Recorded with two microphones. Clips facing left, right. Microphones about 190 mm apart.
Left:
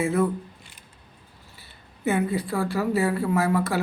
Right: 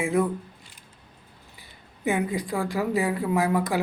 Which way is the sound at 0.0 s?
15° right (ahead or behind).